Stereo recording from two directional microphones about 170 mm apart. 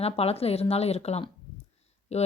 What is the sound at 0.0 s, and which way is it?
Speech, 35° left (ahead or behind).